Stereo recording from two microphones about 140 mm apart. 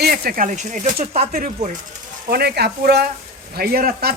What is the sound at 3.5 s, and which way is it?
Speech, 90° right.